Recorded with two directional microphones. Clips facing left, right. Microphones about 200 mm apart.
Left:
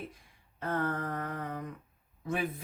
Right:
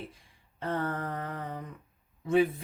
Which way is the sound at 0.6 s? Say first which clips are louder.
Right 1 dB; 30° right (ahead or behind).